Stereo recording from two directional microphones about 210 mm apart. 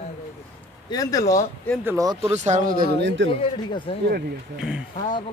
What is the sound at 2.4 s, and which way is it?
Speech, 40° right (ahead or behind).